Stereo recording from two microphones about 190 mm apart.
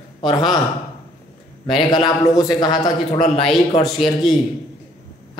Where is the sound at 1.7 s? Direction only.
25° left (ahead or behind).